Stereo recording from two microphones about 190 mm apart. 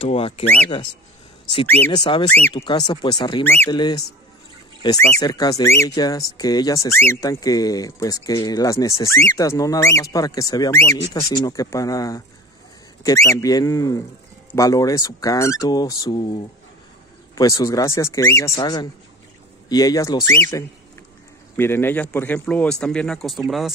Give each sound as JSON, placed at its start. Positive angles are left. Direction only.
{"t": 0.0, "sound": "speech", "side_deg": 30}
{"t": 1.9, "sound": "speech", "side_deg": 25}
{"t": 2.2, "sound": "speech", "side_deg": 10}
{"t": 2.5, "sound": "speech", "side_deg": 25}
{"t": 3.4, "sound": "speech", "side_deg": 10}
{"t": 3.7, "sound": "speech", "side_deg": 25}
{"t": 17.4, "sound": "speech", "side_deg": 20}